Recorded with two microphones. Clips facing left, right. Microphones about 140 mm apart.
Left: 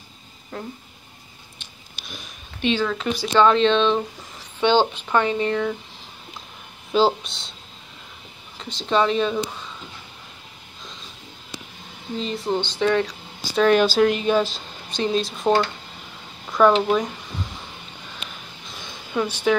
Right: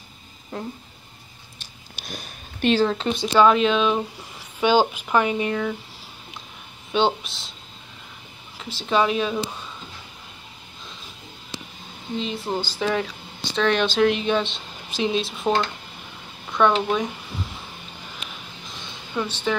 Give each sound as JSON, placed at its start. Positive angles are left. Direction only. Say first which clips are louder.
{"t": 0.5, "sound": "a sound", "louder": "right 1 dB", "side_deg": -20}
{"t": 2.0, "sound": "speech", "louder": "right 3 dB", "side_deg": -40}
{"t": 3.3, "sound": "speech", "louder": "left 1 dB", "side_deg": -10}
{"t": 6.9, "sound": "speech", "louder": "left 2 dB", "side_deg": 0}
{"t": 8.5, "sound": "speech", "louder": "left 1 dB", "side_deg": -5}
{"t": 12.2, "sound": "speech", "louder": "left 3 dB", "side_deg": 0}
{"t": 18.9, "sound": "a sound", "louder": "left 3 dB", "side_deg": 10}